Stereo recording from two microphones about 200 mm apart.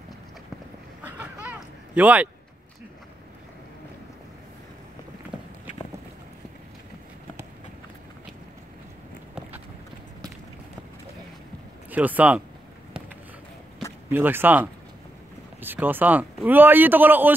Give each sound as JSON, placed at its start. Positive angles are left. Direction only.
{"t": 1.0, "sound": "honk", "side_deg": -5}
{"t": 11.9, "sound": "speech", "side_deg": -10}
{"t": 14.0, "sound": "speech", "side_deg": -10}